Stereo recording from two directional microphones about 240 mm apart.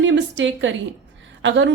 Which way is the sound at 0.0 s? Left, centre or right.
Right.